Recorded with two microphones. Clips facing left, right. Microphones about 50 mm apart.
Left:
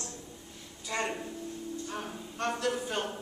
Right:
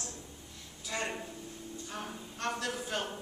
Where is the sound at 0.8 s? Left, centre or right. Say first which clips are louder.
Left 3 dB; centre.